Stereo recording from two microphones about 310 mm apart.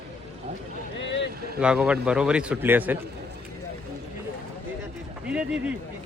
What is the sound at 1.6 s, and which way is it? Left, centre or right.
A man's voice, centre.